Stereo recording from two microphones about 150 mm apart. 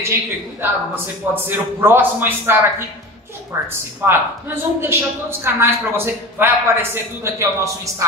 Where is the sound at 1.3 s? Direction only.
15° right (ahead or behind).